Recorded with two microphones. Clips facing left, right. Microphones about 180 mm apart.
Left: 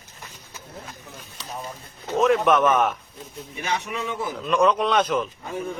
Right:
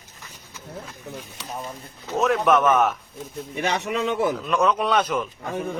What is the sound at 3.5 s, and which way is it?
Speech, 70° right (ahead or behind).